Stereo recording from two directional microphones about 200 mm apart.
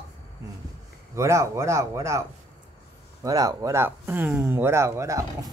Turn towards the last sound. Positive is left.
turn(degrees=-15)  # may be behind; listen again after turning